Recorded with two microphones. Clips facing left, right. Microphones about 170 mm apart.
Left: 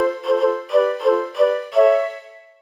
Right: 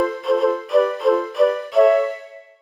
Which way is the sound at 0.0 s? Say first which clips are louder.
Left 1 dB; centre (ahead or behind).